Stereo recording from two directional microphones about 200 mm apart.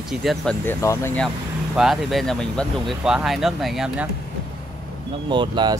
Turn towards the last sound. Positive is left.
turn(degrees=-25)  # may be behind; listen again after turning